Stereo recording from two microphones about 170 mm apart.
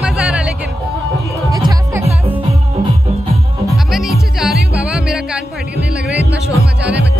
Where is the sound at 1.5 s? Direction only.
20° right (ahead or behind).